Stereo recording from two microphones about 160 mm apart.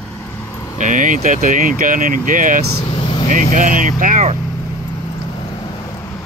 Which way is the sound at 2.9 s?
30° left (ahead or behind).